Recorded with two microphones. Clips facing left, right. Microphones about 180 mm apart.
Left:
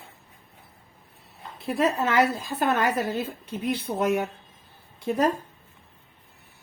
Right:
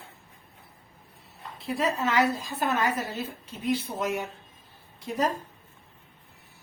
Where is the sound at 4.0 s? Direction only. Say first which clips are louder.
Left 6 dB; 55° left (ahead or behind).